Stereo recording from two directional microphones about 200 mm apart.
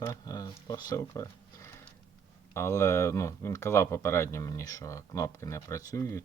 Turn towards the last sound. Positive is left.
turn(degrees=15)  # may be behind; listen again after turning